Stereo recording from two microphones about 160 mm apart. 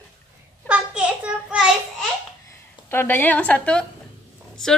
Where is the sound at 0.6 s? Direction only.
5° right (ahead or behind).